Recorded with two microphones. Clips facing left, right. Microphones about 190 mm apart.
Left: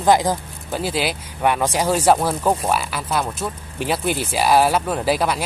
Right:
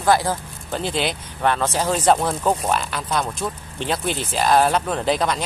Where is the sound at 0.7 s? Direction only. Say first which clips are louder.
Left 1 dB; 5° left (ahead or behind).